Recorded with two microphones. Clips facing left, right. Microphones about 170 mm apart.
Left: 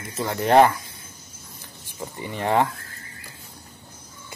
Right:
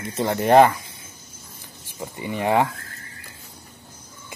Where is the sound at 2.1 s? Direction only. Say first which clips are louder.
Right 1 dB; 15° right (ahead or behind).